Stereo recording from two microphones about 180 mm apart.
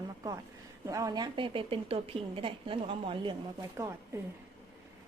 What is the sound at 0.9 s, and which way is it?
A woman's voice, 20° right (ahead or behind).